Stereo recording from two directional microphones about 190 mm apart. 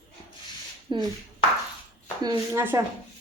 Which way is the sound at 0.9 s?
25° right (ahead or behind).